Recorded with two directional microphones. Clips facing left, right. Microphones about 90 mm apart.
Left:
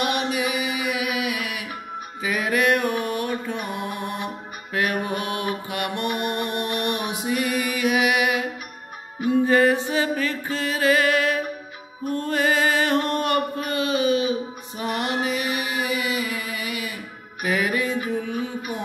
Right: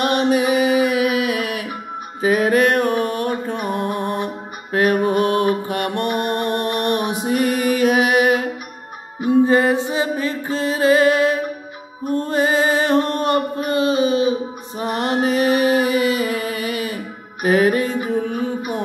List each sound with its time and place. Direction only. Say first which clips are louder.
0.0 s music: right 7 dB; 40° right (ahead or behind)
9.2 s music: right 3 dB; 25° right (ahead or behind)
14.8 s mantra: right 5 dB; 35° right (ahead or behind)
18.1 s music: right 5 dB; 40° right (ahead or behind)